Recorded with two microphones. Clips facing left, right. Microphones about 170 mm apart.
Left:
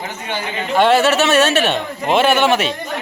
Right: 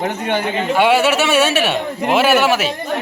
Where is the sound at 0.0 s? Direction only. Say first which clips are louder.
Right 6 dB; 60° right (ahead or behind).